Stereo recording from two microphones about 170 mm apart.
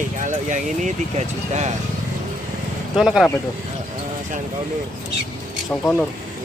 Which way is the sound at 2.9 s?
Centre (ahead or behind).